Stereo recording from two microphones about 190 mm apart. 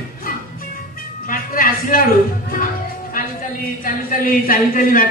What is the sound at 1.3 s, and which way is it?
Music, 45° left (ahead or behind).